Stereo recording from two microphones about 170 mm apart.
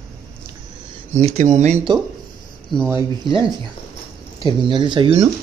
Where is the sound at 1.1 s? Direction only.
40° right (ahead or behind).